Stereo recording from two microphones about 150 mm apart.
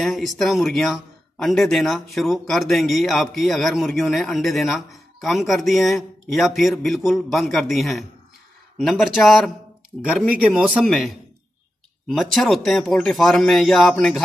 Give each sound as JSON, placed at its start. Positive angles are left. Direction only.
{"t": 0.0, "sound": "speech", "side_deg": 0}